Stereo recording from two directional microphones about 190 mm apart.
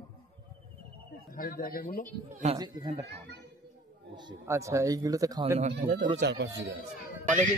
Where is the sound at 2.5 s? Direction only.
20° right (ahead or behind).